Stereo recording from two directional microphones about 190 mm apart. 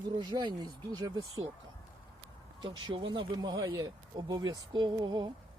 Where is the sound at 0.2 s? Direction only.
20° right (ahead or behind).